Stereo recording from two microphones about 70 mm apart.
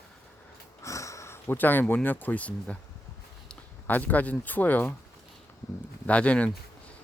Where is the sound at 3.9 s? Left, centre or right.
Left.